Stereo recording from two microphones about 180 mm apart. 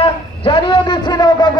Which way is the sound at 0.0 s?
30° left (ahead or behind).